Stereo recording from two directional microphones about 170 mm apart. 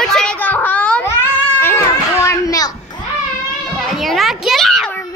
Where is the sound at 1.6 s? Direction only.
15° left (ahead or behind).